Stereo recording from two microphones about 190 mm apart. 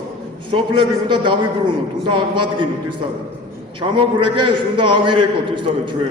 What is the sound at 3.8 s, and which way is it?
A man's voice, 25° right (ahead or behind).